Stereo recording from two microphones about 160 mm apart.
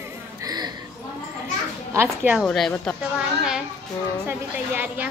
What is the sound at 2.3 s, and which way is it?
Speech, centre (ahead or behind).